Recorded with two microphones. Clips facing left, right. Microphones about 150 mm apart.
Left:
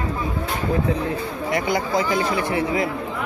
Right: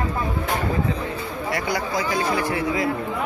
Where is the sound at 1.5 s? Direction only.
25° left (ahead or behind).